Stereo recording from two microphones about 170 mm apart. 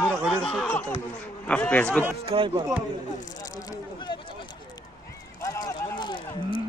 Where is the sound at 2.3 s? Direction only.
30° right (ahead or behind).